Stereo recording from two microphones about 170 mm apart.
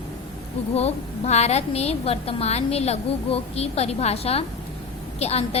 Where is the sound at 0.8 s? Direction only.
40° left (ahead or behind).